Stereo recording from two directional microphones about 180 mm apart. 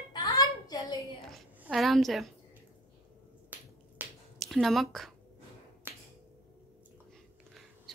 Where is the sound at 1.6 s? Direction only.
Centre (ahead or behind).